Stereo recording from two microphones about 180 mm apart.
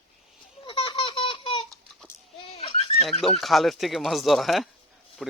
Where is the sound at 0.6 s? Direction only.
25° left (ahead or behind).